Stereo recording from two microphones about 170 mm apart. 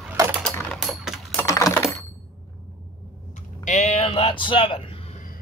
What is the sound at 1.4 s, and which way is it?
Coin, 20° left (ahead or behind).